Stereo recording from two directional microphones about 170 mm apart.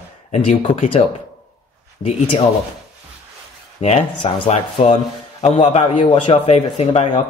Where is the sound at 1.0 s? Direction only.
35° left (ahead or behind).